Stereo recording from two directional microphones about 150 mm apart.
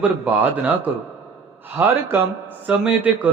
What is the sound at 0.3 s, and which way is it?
Speech, 10° right (ahead or behind).